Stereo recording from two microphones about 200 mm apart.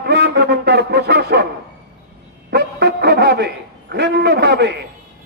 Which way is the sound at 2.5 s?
55° right (ahead or behind).